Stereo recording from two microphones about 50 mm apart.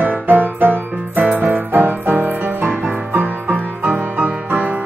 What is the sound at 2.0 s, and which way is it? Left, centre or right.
Music, right.